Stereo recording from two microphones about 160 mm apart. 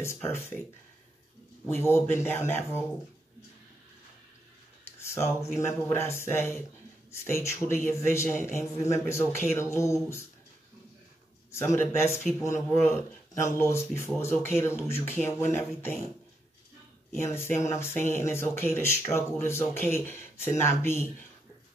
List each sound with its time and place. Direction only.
0.0 s speech: 15° left (ahead or behind)
1.7 s speech: 15° left (ahead or behind)
4.8 s speech: 15° left (ahead or behind)
11.5 s speech: 15° left (ahead or behind)
17.2 s speech: 15° left (ahead or behind)